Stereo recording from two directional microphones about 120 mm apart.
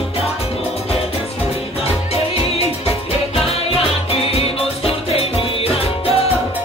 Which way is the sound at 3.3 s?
55° left (ahead or behind).